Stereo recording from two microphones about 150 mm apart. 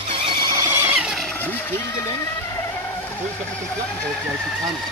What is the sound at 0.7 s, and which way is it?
Squeal, 10° right (ahead or behind).